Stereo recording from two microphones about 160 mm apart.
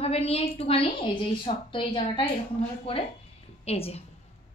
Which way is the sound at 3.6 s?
40° left (ahead or behind).